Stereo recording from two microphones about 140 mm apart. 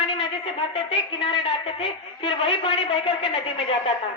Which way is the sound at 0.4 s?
35° left (ahead or behind).